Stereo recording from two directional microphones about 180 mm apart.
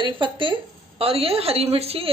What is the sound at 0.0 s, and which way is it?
A woman's voice, 25° right (ahead or behind).